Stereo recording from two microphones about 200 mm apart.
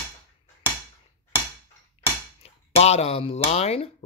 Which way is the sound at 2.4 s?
30° left (ahead or behind).